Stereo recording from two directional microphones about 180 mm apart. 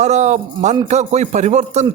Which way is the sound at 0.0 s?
40° right (ahead or behind).